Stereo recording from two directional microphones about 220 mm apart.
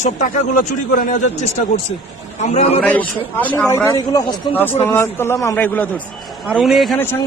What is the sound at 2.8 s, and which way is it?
A man's voice, 5° left (ahead or behind).